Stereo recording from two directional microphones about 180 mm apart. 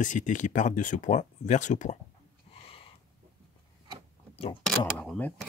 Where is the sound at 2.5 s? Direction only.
35° left (ahead or behind).